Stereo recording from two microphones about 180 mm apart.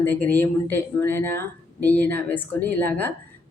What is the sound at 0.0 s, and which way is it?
Speech, 10° left (ahead or behind).